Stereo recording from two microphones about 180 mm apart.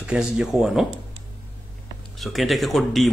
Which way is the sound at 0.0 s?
5° right (ahead or behind).